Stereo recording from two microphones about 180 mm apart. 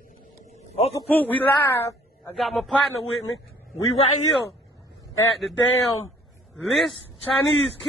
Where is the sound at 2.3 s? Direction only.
Centre (ahead or behind).